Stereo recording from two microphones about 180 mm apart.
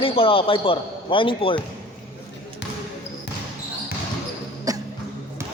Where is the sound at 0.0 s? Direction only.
30° left (ahead or behind).